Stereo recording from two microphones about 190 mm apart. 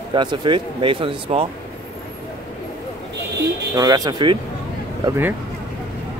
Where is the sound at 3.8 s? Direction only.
20° right (ahead or behind).